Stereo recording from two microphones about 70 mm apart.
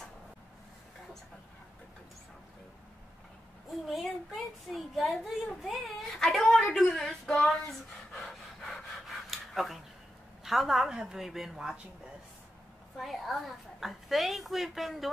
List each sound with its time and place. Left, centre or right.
3.8 s a sound: centre
8.1 s pant: centre
10.4 s a woman's voice: centre
12.9 s a woman's voice: centre